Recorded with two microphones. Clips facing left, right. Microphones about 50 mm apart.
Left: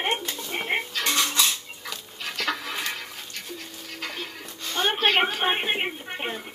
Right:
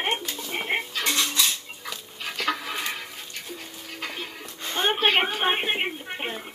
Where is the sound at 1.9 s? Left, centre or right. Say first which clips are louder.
Even; centre.